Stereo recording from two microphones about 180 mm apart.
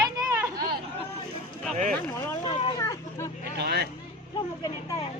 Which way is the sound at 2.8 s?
15° left (ahead or behind).